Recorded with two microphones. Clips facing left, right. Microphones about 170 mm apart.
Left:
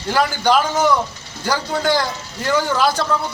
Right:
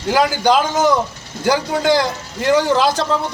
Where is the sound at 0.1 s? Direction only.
15° right (ahead or behind).